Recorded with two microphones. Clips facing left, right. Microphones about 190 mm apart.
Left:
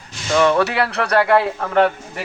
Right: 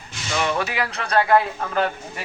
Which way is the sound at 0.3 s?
55° left (ahead or behind).